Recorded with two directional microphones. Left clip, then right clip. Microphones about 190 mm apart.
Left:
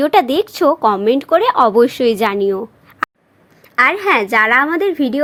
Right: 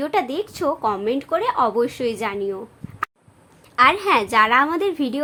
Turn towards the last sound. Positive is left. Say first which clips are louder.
# left 6 dB
turn(degrees=20)  # may be behind; listen again after turning